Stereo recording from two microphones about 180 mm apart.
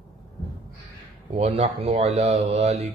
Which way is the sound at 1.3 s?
35° right (ahead or behind).